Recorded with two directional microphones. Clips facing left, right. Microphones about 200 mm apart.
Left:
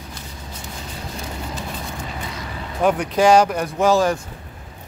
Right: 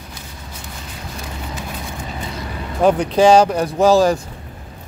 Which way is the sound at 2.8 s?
30° right (ahead or behind).